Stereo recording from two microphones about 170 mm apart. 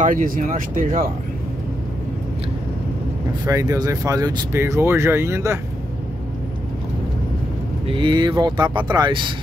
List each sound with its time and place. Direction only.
0.0 s speech: 55° right (ahead or behind)
3.4 s speech: 20° right (ahead or behind)
7.8 s speech: 30° right (ahead or behind)